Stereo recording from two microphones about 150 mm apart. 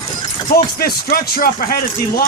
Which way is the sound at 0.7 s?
85° left.